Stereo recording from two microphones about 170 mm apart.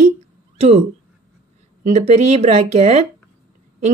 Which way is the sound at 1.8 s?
40° right (ahead or behind).